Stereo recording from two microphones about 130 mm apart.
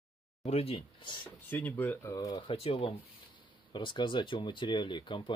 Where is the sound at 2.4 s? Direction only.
45° left (ahead or behind).